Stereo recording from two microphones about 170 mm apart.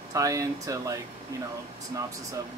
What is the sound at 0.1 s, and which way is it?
Speech, 20° right (ahead or behind).